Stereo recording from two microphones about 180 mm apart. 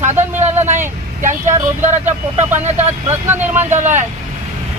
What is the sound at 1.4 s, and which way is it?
Speech, 15° right (ahead or behind).